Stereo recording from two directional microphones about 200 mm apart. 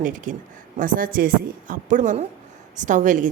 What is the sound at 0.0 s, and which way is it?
A woman's voice, 40° right (ahead or behind).